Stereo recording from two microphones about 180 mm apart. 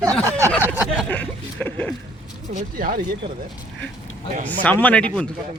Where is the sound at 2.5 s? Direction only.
50° right (ahead or behind).